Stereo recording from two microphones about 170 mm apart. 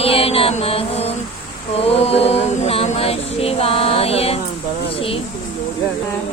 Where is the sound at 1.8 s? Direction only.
35° left (ahead or behind).